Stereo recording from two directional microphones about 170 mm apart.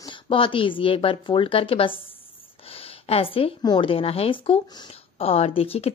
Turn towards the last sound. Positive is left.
turn(degrees=35)  # may be behind; listen again after turning